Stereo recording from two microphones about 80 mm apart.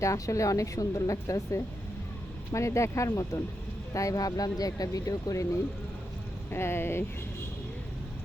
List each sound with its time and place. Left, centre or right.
0.0 s speech: left
6.5 s speech: left